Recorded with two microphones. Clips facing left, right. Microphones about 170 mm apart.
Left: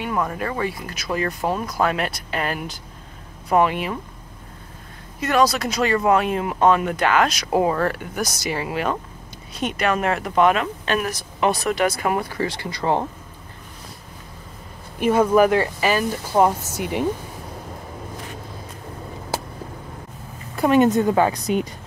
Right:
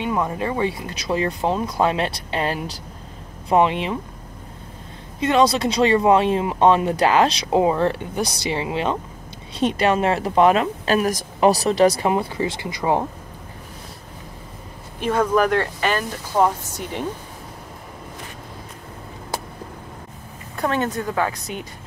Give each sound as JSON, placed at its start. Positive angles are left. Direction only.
{"t": 0.0, "sound": "speech", "side_deg": -20}
{"t": 5.2, "sound": "speech", "side_deg": -25}
{"t": 7.4, "sound": "speech", "side_deg": -15}
{"t": 12.1, "sound": "speech", "side_deg": -25}
{"t": 15.0, "sound": "speech", "side_deg": 10}
{"t": 20.5, "sound": "a woman's voice", "side_deg": 10}